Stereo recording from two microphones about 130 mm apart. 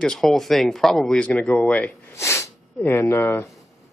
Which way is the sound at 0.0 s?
5° left (ahead or behind).